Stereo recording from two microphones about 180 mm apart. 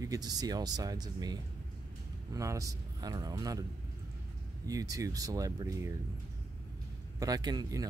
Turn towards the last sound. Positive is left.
turn(degrees=-20)  # may be behind; listen again after turning